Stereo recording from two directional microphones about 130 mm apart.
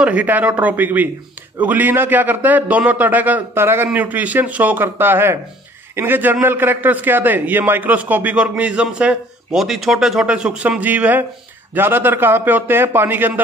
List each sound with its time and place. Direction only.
0.0 s a man's voice: 10° right (ahead or behind)